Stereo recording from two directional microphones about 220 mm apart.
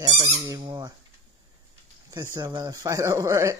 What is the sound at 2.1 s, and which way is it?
Speech, 15° right (ahead or behind).